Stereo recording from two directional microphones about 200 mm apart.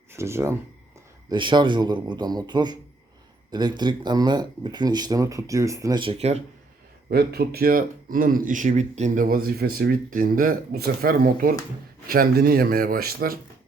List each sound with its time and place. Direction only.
0.1 s speech: 15° right (ahead or behind); by 6.4 s 35° right (ahead or behind)
7.1 s speech: 50° right (ahead or behind)